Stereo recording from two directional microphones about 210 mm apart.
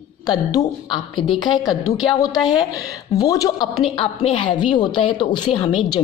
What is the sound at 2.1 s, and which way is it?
A woman's voice, 20° left (ahead or behind).